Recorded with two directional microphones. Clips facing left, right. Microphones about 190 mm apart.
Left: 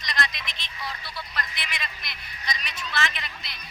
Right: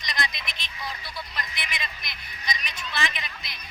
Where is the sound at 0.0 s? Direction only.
15° right (ahead or behind).